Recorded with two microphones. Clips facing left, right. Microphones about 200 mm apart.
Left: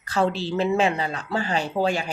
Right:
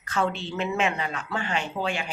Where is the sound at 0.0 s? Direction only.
35° left (ahead or behind).